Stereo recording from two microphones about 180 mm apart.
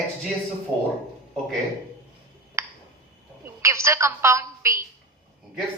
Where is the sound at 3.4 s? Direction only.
15° right (ahead or behind).